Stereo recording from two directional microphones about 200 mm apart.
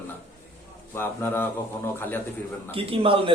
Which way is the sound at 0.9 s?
10° left (ahead or behind).